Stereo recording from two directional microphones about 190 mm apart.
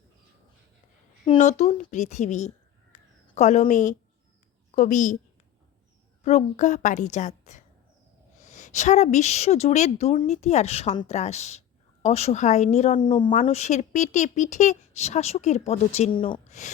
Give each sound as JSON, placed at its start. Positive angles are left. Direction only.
{"t": 1.4, "sound": "speech", "side_deg": 40}
{"t": 2.9, "sound": "a sound", "side_deg": 35}
{"t": 4.7, "sound": "a woman's voice", "side_deg": 40}
{"t": 6.2, "sound": "speech", "side_deg": 40}
{"t": 13.0, "sound": "speech", "side_deg": 25}
{"t": 13.4, "sound": "speech", "side_deg": 35}
{"t": 16.5, "sound": "speech", "side_deg": 40}